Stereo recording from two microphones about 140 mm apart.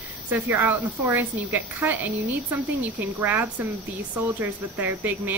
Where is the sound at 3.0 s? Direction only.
15° right (ahead or behind).